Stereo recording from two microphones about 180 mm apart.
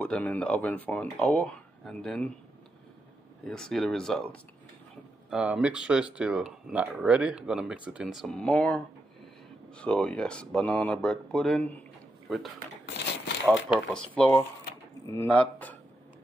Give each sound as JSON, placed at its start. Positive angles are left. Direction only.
{"t": 0.0, "sound": "speech", "side_deg": 10}
{"t": 3.4, "sound": "speech", "side_deg": 5}
{"t": 12.8, "sound": "crumpling", "side_deg": 75}
{"t": 14.1, "sound": "speech", "side_deg": 5}